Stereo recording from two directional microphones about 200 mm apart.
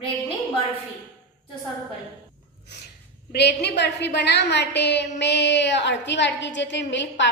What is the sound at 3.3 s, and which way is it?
A woman's voice, 55° left (ahead or behind).